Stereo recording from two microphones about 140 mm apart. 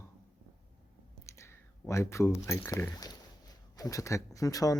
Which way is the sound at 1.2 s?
20° left (ahead or behind).